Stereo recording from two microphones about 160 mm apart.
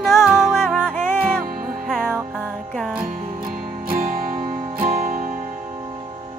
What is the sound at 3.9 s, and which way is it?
Music, 65° right (ahead or behind).